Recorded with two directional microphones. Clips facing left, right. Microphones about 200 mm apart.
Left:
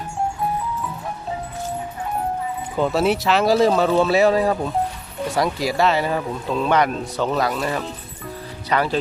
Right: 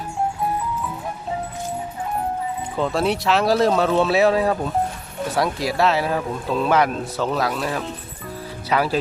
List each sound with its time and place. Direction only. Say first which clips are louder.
2.7 s speech: left 3 dB; 5° left (ahead or behind)